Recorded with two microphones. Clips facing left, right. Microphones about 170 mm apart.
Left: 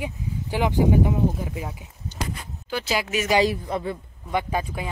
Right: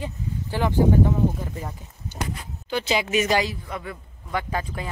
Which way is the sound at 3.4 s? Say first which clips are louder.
Left 7 dB; 30° left (ahead or behind).